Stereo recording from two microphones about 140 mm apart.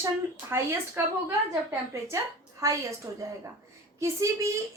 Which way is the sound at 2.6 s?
20° right (ahead or behind).